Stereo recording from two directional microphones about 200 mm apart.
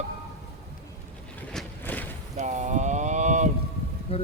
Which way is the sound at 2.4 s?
35° right (ahead or behind).